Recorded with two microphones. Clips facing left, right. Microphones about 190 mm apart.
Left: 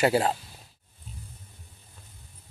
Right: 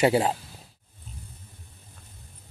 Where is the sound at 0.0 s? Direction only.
20° right (ahead or behind).